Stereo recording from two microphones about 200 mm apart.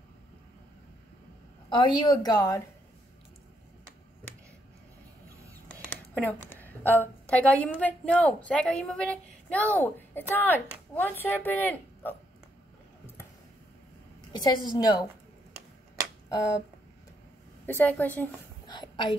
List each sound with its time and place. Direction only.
1.7 s a woman's voice: 20° left (ahead or behind)
5.5 s speech: 5° left (ahead or behind)
14.4 s a woman's voice: 20° left (ahead or behind)
16.3 s speech: 15° left (ahead or behind)
17.6 s a woman's voice: 10° left (ahead or behind)
18.7 s a sound: 25° left (ahead or behind)